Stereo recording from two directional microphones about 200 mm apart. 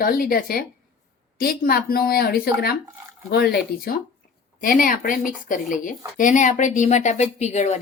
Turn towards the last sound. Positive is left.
turn(degrees=35)  # may be behind; listen again after turning